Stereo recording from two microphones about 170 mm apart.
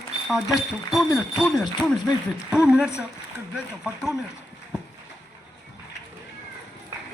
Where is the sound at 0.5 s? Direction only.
Centre (ahead or behind).